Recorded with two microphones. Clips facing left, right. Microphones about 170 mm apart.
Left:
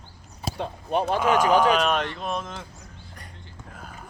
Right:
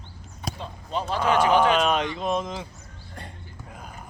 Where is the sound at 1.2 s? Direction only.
10° left (ahead or behind).